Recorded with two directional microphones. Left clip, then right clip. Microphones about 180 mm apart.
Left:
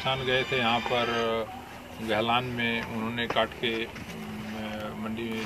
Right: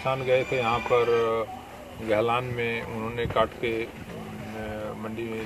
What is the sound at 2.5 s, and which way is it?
Speech, 80° right.